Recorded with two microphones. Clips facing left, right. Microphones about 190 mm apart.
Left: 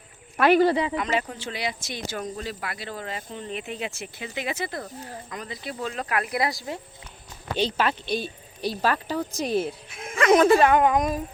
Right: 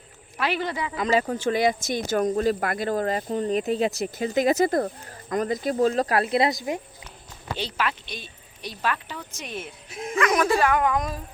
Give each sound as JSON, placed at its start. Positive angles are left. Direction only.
{"t": 0.3, "sound": "a woman's voice", "side_deg": 50}
{"t": 0.6, "sound": "a woman's voice", "side_deg": 30}
{"t": 1.3, "sound": "speech", "side_deg": -45}
{"t": 7.8, "sound": "a woman's voice", "side_deg": 30}
{"t": 9.9, "sound": "speech", "side_deg": -35}
{"t": 10.2, "sound": "speech", "side_deg": 25}